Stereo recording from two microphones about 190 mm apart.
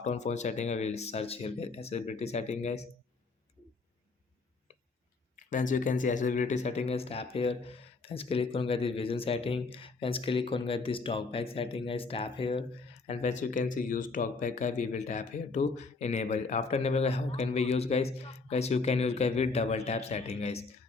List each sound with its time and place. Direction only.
0.0 s speech: 35° left (ahead or behind)
5.5 s speech: 45° left (ahead or behind)